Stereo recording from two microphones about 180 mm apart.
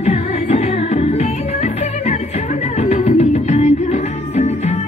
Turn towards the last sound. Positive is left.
turn(degrees=35)  # may be behind; listen again after turning